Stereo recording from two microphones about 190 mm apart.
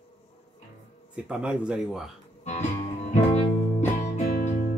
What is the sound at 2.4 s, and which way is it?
Music, 40° left (ahead or behind).